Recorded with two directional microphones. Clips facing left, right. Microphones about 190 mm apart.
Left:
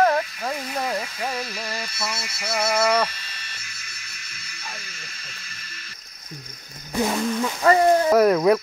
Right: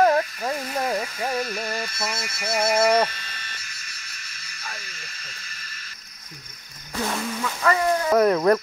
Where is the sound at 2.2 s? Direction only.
10° right (ahead or behind).